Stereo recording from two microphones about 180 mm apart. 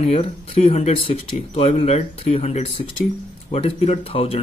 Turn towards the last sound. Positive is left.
turn(degrees=30)  # may be behind; listen again after turning